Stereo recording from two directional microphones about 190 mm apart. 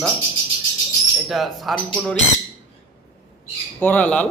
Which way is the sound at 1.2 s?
Centre (ahead or behind).